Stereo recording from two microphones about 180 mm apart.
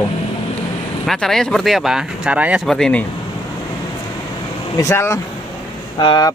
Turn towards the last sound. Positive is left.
turn(degrees=25)  # may be behind; listen again after turning